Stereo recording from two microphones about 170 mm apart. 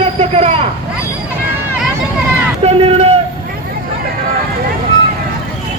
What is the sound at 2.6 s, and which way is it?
Speech, 35° right (ahead or behind).